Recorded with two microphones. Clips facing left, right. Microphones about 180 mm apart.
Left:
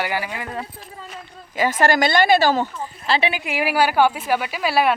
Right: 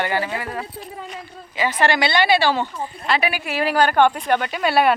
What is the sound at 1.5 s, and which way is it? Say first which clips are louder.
A woman's voice: left 2 dB; 45° left (ahead or behind).